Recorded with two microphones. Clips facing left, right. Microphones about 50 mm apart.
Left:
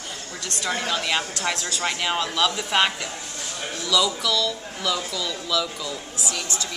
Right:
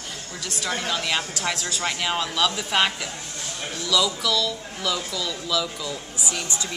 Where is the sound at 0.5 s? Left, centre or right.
Centre.